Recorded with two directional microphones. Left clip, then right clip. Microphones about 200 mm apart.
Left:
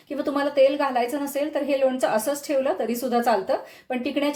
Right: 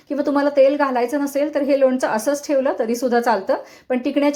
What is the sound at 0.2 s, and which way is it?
A woman's voice, 25° right (ahead or behind).